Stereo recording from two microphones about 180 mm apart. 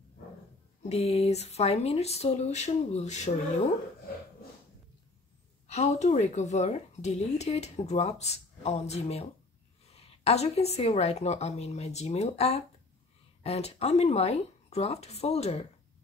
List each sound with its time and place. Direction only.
0.8 s speech: 35° left (ahead or behind)
5.7 s speech: 40° left (ahead or behind)